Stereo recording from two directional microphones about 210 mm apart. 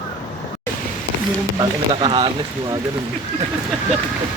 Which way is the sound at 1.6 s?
20° right (ahead or behind).